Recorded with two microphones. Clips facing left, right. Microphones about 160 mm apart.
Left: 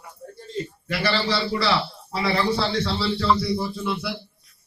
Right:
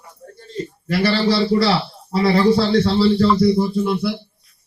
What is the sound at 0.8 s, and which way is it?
A man's voice, 40° right (ahead or behind).